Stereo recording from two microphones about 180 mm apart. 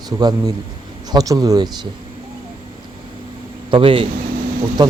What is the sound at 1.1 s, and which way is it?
Speech, 20° right (ahead or behind).